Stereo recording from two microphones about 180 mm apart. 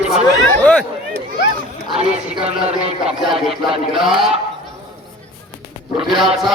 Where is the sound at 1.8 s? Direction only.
35° right (ahead or behind).